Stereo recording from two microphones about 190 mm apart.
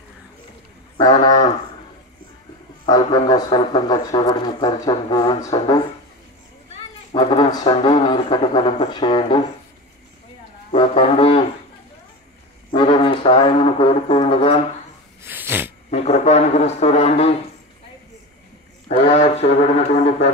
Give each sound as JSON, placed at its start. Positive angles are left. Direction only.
{"t": 0.9, "sound": "speech", "side_deg": 20}
{"t": 2.8, "sound": "speech", "side_deg": 20}
{"t": 6.7, "sound": "speech", "side_deg": 30}
{"t": 10.7, "sound": "speech", "side_deg": 30}
{"t": 13.0, "sound": "speech", "side_deg": 30}
{"t": 15.2, "sound": "sneeze", "side_deg": -10}
{"t": 15.9, "sound": "speech", "side_deg": 35}
{"t": 18.9, "sound": "speech", "side_deg": 35}